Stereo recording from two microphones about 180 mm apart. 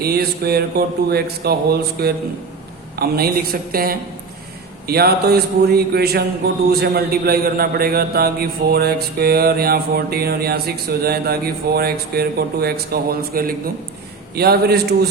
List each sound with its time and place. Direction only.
0.0 s a man's voice: 60° right (ahead or behind)